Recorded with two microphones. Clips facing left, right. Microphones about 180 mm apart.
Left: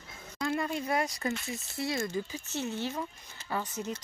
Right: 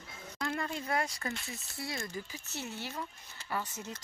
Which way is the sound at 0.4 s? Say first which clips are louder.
Left 5 dB; 15° left (ahead or behind).